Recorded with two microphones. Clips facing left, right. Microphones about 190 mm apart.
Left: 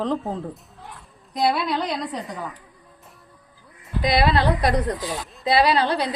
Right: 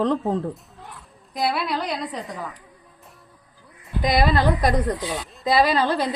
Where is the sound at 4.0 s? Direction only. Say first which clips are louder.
Even; 45° right (ahead or behind).